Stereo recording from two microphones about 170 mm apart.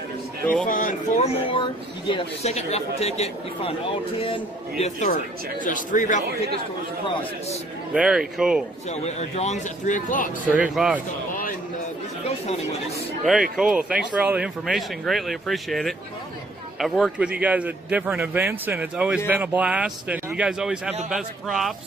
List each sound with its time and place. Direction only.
0.7 s speech: 50° left (ahead or behind)
7.9 s speech: 5° right (ahead or behind)
8.9 s speech: 40° left (ahead or behind)
10.5 s a man's voice: 5° right (ahead or behind)
13.2 s a man's voice: centre (ahead or behind)